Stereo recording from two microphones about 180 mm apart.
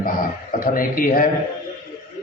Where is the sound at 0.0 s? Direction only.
50° left (ahead or behind).